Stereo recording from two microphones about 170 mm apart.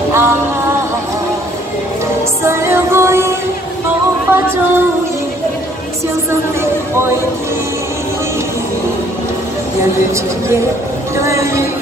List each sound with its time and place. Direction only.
0.1 s music: 15° right (ahead or behind)
2.4 s music: 15° right (ahead or behind)
4.3 s speech: 15° right (ahead or behind)
11.1 s speech: 15° right (ahead or behind)